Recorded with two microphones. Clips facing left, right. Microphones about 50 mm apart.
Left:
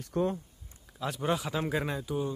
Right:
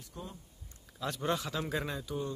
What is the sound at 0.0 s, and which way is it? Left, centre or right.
Speech, left.